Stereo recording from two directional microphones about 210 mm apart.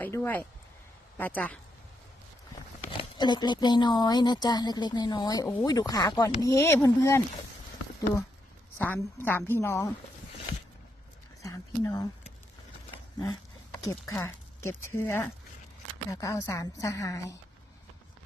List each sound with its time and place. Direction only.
0.0 s a woman's voice: 10° left (ahead or behind)
2.9 s speech: 25° left (ahead or behind)
9.2 s a woman's voice: 10° left (ahead or behind)
11.4 s speech: 15° left (ahead or behind)
13.7 s a woman's voice: 10° left (ahead or behind)